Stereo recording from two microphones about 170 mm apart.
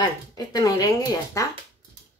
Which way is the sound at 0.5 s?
20° left (ahead or behind).